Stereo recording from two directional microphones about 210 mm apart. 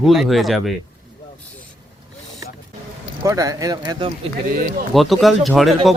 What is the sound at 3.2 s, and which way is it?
Speech, 15° right (ahead or behind).